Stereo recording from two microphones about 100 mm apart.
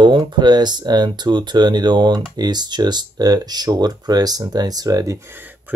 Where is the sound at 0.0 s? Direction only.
50° right (ahead or behind).